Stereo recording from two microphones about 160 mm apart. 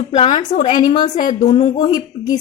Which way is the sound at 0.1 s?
45° left (ahead or behind).